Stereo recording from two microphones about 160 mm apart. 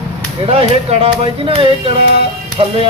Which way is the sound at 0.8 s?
35° right (ahead or behind).